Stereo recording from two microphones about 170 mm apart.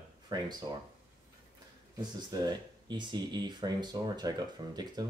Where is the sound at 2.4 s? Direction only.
25° right (ahead or behind).